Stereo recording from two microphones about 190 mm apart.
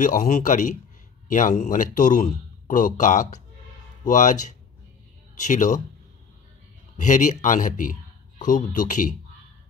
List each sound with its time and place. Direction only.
0.0 s speech: 45° left (ahead or behind)
5.5 s speech: 40° left (ahead or behind)
7.0 s speech: 40° left (ahead or behind)